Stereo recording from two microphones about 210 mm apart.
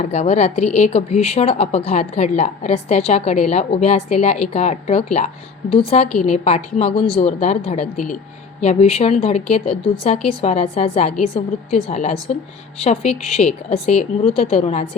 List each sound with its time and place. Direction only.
0.0 s a woman's voice: 30° left (ahead or behind)